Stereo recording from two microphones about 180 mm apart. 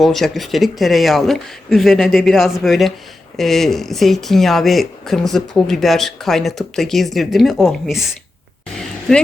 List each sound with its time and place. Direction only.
0.0 s speech: centre (ahead or behind)